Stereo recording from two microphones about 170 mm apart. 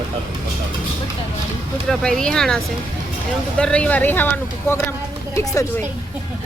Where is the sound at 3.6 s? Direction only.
5° left (ahead or behind).